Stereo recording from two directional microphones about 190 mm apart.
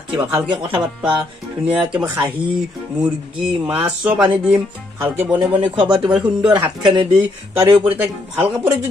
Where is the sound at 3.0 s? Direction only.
5° right (ahead or behind).